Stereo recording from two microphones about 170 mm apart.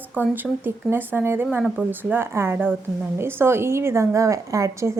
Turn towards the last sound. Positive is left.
turn(degrees=-15)  # may be behind; listen again after turning